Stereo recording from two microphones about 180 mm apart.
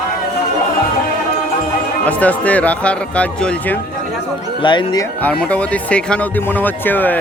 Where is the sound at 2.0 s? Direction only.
10° left (ahead or behind).